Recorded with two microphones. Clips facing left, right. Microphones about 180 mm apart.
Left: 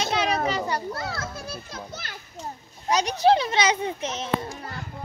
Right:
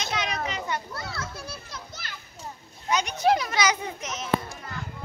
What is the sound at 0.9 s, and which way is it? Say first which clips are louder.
Children playing: left 4 dB; 50° left (ahead or behind).